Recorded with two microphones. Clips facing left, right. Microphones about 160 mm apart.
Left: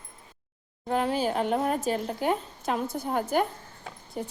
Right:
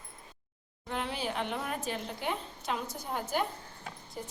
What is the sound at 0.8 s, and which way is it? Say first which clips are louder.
Speech: left 9 dB; 45° left (ahead or behind).